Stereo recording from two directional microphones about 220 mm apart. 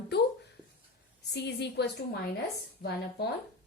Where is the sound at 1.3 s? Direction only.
50° left (ahead or behind).